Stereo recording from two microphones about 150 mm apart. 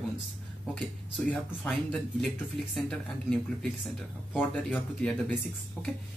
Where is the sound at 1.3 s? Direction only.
5° left (ahead or behind).